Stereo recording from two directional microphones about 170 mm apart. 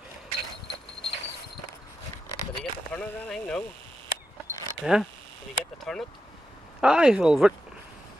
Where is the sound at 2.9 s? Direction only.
10° left (ahead or behind).